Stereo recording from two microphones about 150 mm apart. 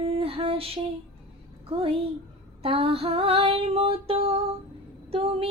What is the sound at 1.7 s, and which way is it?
Female singing, 40° right (ahead or behind).